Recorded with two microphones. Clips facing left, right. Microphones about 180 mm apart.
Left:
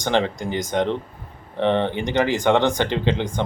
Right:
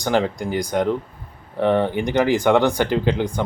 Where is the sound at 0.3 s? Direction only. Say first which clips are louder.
Right 2 dB; 20° left (ahead or behind).